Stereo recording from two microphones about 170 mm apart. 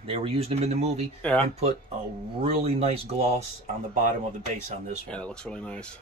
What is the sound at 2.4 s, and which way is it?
Speech, 35° right (ahead or behind).